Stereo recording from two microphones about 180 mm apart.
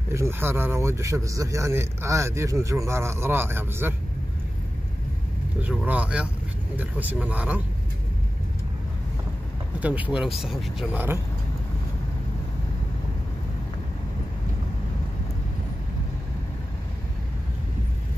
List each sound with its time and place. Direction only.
0.1 s a man's voice: 15° right (ahead or behind)
5.6 s a man's voice: 10° right (ahead or behind)
9.8 s a man's voice: 10° right (ahead or behind)